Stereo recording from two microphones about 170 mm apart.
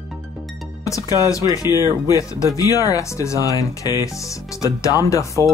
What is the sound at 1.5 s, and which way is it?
Speech, 20° left (ahead or behind).